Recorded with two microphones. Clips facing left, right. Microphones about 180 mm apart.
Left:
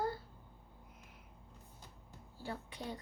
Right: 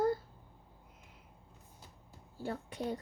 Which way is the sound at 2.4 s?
45° right (ahead or behind).